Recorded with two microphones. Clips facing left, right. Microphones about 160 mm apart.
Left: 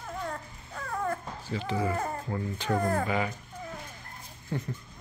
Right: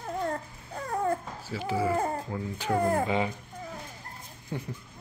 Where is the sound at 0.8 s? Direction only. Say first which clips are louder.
Right 3 dB; 30° right (ahead or behind).